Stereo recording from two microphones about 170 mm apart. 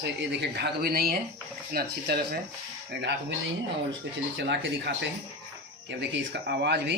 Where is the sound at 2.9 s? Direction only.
90° right.